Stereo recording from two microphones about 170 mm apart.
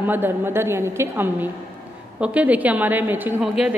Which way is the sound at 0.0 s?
10° right (ahead or behind).